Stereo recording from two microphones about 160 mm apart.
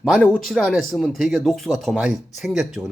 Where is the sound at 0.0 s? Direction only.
5° left (ahead or behind).